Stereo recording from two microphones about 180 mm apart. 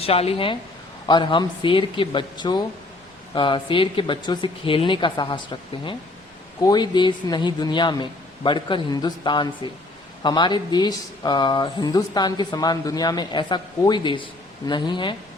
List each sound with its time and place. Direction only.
0.0 s speech: 35° left (ahead or behind)